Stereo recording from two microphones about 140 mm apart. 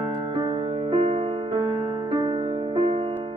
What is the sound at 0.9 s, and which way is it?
Music, 45° right (ahead or behind).